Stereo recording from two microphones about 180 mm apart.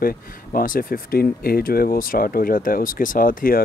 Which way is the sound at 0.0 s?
50° left (ahead or behind).